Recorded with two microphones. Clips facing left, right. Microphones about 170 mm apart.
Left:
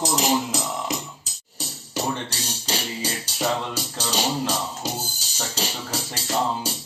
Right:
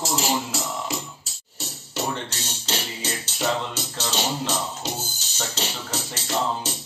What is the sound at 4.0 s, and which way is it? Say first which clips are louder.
Music: left 2 dB; 10° left (ahead or behind).